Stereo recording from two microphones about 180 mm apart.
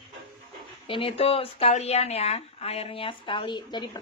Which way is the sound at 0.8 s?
30° left (ahead or behind).